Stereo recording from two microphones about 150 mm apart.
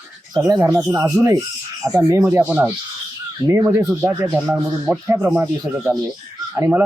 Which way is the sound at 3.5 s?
20° right (ahead or behind).